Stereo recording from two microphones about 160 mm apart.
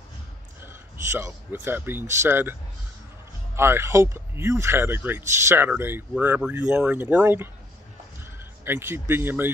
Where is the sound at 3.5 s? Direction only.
15° right (ahead or behind).